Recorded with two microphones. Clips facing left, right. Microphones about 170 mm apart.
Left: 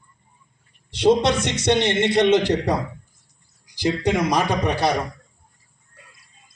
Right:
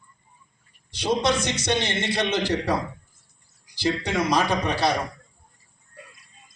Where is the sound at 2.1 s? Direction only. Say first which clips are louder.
Left 7 dB; 20° left (ahead or behind).